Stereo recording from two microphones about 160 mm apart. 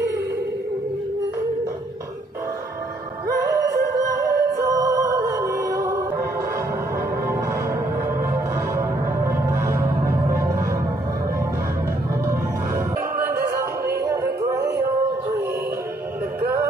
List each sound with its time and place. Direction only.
3.3 s music: 20° right (ahead or behind)
8.2 s music: 15° right (ahead or behind)
12.3 s music: 15° right (ahead or behind)
16.3 s music: 15° right (ahead or behind)